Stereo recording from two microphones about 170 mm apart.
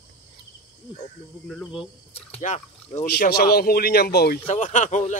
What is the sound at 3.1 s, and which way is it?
Speech, 70° left (ahead or behind).